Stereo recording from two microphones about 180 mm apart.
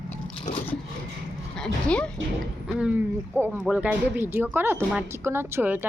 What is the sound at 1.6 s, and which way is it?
Speech, 5° left (ahead or behind).